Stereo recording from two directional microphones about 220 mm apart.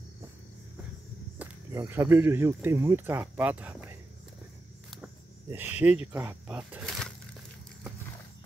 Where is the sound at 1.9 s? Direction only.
10° right (ahead or behind).